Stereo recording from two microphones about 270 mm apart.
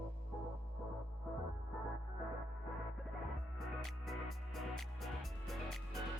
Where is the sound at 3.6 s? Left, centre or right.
Centre.